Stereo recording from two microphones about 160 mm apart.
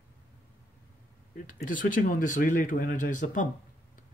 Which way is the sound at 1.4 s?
55° left (ahead or behind).